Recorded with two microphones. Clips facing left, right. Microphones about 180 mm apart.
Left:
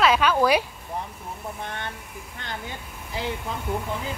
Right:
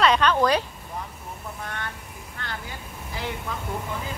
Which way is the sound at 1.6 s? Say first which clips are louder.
Right 1 dB; 25° left (ahead or behind).